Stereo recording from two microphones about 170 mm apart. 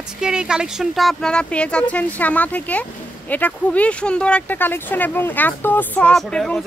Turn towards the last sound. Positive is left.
turn(degrees=5)  # may be behind; listen again after turning